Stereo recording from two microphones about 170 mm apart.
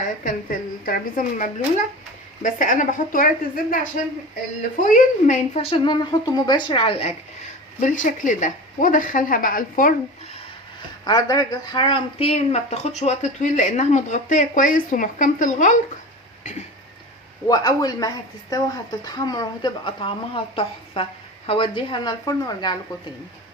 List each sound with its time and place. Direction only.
0.3 s a woman's voice: 55° left (ahead or behind)
5.7 s speech: 25° left (ahead or behind)
7.8 s speech: 45° left (ahead or behind)
11.0 s speech: 25° left (ahead or behind); by 15.8 s 50° left (ahead or behind)
16.4 s a sound: 45° left (ahead or behind)
17.5 s speech: 25° left (ahead or behind)